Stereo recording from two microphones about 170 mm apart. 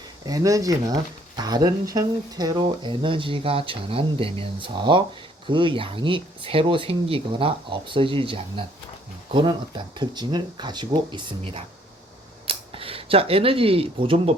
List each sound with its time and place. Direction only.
0.3 s speech: 20° right (ahead or behind)